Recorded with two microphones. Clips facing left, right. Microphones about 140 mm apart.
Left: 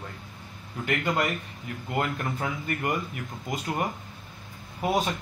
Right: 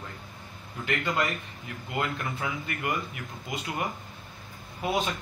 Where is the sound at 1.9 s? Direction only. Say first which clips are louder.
Left 2 dB; 40° left (ahead or behind).